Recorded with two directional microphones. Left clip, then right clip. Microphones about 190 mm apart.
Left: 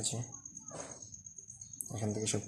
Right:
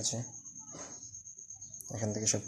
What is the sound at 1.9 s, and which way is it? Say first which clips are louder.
Speech: right 3 dB; 35° right (ahead or behind).